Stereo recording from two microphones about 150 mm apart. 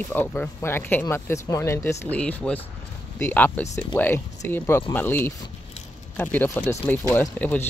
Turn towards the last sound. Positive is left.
turn(degrees=10)  # may be behind; listen again after turning